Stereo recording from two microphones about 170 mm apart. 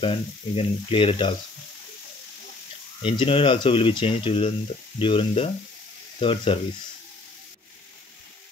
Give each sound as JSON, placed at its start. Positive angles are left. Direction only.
{"t": 0.0, "sound": "speech", "side_deg": 35}
{"t": 3.0, "sound": "speech", "side_deg": 30}